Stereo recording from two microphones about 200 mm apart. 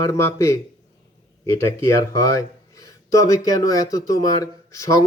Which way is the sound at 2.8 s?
15° left (ahead or behind).